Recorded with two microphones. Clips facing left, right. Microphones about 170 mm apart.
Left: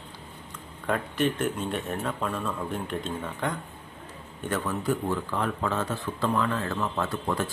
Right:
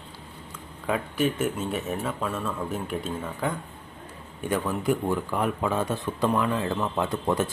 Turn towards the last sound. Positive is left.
turn(degrees=-20)  # may be behind; listen again after turning